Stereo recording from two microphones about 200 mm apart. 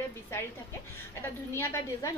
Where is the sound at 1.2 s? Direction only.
15° left (ahead or behind).